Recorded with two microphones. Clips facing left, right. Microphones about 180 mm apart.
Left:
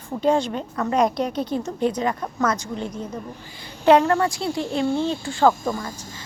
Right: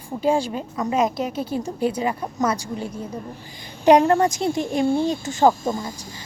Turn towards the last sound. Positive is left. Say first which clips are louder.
# right 1 dB
turn(degrees=-20)  # may be behind; listen again after turning